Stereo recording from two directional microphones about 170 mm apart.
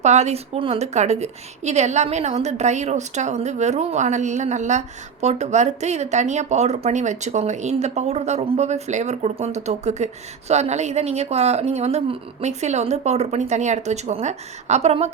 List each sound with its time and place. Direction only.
0.0 s a woman's voice: 40° right (ahead or behind)